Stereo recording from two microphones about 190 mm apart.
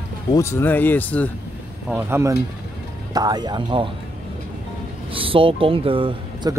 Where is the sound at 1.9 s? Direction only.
15° right (ahead or behind).